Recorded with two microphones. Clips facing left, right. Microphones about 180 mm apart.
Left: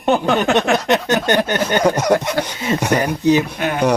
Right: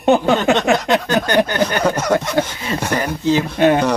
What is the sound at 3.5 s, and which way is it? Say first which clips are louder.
Speech: right 8 dB; 30° right (ahead or behind).